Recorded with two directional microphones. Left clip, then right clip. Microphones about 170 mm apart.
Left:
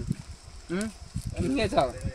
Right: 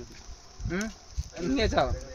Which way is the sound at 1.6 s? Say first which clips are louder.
Left 1 dB; 55° left (ahead or behind).